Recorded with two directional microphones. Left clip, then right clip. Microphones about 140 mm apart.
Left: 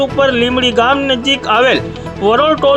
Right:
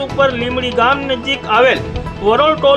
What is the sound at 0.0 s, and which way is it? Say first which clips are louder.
Speech: left 3 dB; 45° left (ahead or behind).